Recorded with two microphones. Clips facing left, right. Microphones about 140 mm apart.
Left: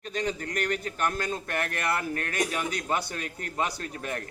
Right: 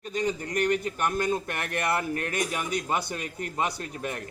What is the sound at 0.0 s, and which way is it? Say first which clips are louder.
Speech: right 2 dB; 10° right (ahead or behind).